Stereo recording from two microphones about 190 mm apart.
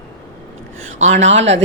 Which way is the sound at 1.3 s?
75° right (ahead or behind).